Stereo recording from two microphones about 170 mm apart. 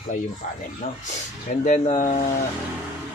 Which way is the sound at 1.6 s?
50° left (ahead or behind).